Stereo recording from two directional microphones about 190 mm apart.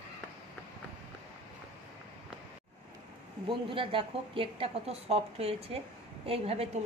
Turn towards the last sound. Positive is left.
turn(degrees=-35)  # may be behind; listen again after turning